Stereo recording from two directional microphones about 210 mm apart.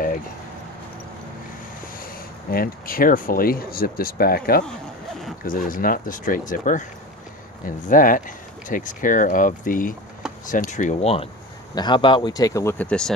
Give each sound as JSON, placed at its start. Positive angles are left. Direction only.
{"t": 2.0, "sound": "speech", "side_deg": 45}